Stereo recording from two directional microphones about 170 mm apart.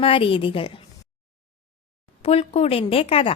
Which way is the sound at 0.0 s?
30° left (ahead or behind).